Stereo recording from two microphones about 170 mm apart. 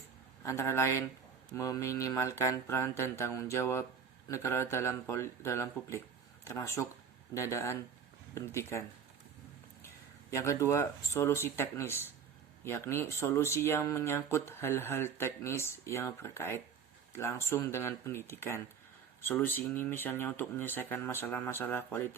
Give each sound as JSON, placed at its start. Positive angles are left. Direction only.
{"t": 0.4, "sound": "speech", "side_deg": 15}
{"t": 10.3, "sound": "speech", "side_deg": 15}